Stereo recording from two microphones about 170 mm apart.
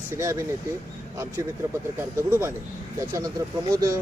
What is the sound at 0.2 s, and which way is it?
Speech, 15° right (ahead or behind).